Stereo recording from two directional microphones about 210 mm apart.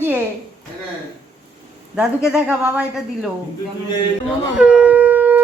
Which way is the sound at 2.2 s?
5° right (ahead or behind).